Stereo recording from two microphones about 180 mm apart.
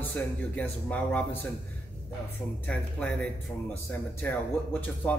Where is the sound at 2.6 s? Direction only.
5° left (ahead or behind).